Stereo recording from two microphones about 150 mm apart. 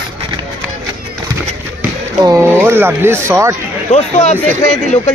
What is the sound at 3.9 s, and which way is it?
Speech, 50° left (ahead or behind).